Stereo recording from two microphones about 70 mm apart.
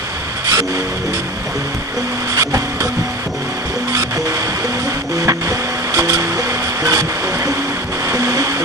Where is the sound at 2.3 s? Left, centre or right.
Right.